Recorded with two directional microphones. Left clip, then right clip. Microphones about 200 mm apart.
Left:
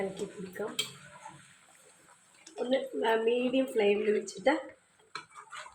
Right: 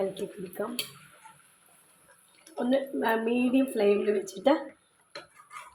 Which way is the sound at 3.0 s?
30° right (ahead or behind).